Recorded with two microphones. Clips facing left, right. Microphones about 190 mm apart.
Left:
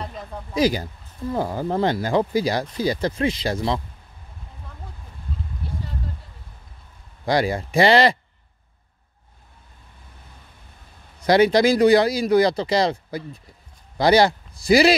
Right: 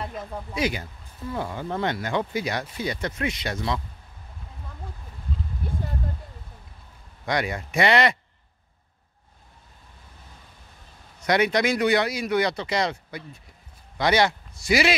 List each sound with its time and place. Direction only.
0.0 s a sound: 5° right (ahead or behind)
0.6 s speech: 35° left (ahead or behind)
7.2 s speech: 30° left (ahead or behind)
11.1 s speech: 30° left (ahead or behind)